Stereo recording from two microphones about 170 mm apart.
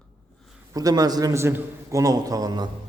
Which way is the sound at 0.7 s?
20° right (ahead or behind).